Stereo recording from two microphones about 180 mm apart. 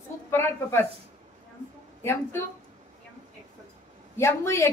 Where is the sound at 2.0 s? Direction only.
15° left (ahead or behind).